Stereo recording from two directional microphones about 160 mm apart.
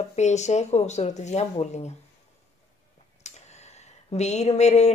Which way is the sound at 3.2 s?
45° left (ahead or behind).